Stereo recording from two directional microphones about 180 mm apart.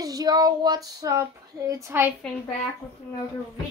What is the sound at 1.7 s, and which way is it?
Speech, 15° right (ahead or behind).